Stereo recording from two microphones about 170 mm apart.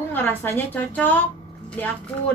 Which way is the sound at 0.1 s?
10° left (ahead or behind).